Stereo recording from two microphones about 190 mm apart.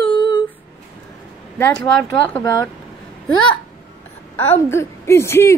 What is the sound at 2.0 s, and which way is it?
Speech, 15° left (ahead or behind).